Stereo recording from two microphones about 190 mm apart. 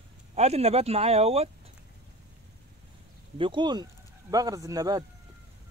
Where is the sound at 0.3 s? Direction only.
35° right (ahead or behind).